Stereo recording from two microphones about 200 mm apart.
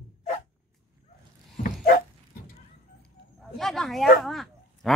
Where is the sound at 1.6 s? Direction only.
45° left (ahead or behind).